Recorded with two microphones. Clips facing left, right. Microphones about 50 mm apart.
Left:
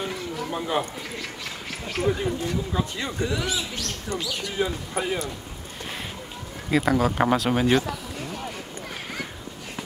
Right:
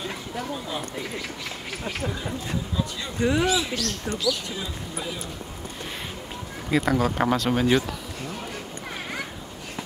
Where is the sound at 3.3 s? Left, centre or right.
Right.